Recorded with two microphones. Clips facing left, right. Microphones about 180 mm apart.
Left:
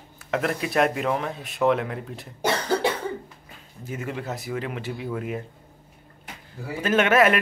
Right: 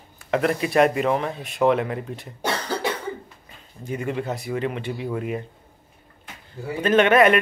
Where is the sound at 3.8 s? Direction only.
Centre (ahead or behind).